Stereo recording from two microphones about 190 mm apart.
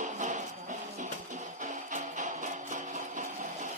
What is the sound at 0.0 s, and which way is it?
Music, 40° right (ahead or behind).